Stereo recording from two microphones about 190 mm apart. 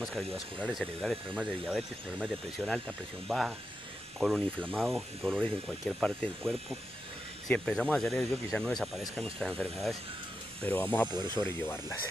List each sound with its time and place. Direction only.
0.0 s speech: centre (ahead or behind)
11.1 s speech: 20° right (ahead or behind)
11.3 s speech: 10° left (ahead or behind)